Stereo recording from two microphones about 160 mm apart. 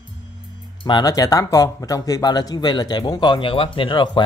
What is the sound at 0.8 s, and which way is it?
Speech, 25° left (ahead or behind).